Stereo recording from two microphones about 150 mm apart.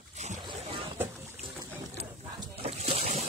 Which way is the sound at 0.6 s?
35° right (ahead or behind).